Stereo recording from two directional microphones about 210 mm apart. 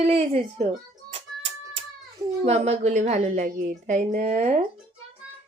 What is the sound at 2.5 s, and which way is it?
A woman's voice, 30° right (ahead or behind).